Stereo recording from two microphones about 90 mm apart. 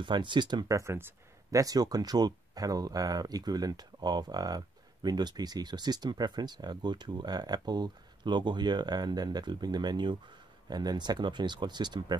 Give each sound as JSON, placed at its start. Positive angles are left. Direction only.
{"t": 0.0, "sound": "speech", "side_deg": -60}
{"t": 0.7, "sound": "speech", "side_deg": -35}
{"t": 1.5, "sound": "speech", "side_deg": -40}